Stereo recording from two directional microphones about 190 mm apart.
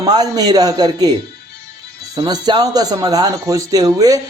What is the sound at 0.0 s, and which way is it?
Speech, 20° right (ahead or behind).